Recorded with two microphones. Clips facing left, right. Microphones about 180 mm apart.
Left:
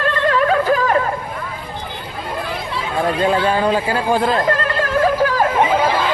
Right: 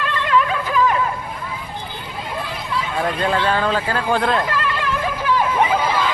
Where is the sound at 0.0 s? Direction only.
40° left (ahead or behind).